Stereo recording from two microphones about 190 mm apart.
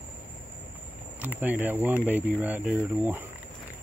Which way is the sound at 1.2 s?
10° right (ahead or behind).